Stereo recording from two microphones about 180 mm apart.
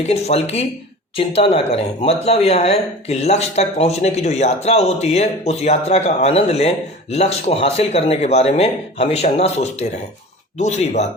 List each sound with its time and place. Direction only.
0.1 s speech: 35° left (ahead or behind)